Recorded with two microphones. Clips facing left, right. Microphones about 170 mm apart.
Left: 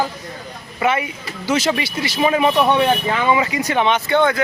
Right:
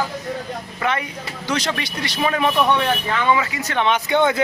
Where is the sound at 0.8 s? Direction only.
10° left (ahead or behind).